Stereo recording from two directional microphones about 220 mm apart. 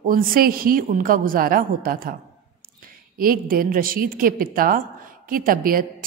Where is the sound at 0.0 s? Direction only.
40° right (ahead or behind).